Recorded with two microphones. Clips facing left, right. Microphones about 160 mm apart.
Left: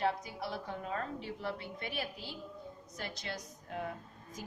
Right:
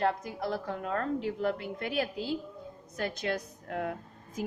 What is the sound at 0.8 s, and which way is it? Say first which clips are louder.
Speech: right 7 dB; 65° right (ahead or behind).